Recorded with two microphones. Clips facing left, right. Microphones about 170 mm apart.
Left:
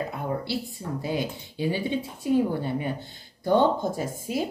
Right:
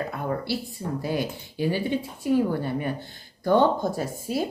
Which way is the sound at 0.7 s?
20° left (ahead or behind).